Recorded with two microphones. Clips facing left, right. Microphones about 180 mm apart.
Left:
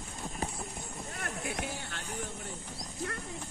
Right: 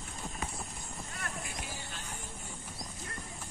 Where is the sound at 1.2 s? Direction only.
60° left (ahead or behind).